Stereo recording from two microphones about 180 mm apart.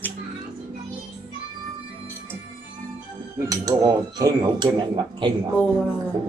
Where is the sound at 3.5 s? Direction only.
20° right (ahead or behind).